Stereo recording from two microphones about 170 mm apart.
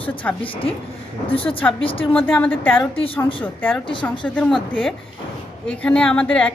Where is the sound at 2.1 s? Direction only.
10° left (ahead or behind).